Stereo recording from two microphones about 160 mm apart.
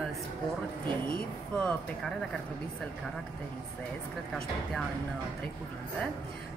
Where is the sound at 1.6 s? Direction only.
5° left (ahead or behind).